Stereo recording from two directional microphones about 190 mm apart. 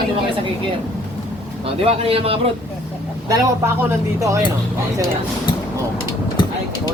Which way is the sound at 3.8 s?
15° right (ahead or behind).